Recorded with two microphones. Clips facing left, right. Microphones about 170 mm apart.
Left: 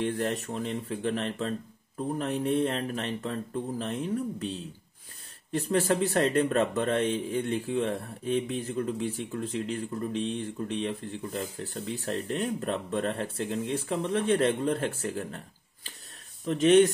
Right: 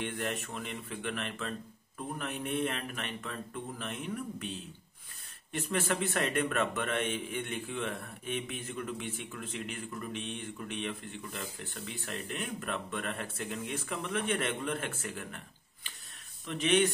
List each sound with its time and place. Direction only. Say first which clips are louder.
0.0 s speech: left 7 dB; 35° left (ahead or behind)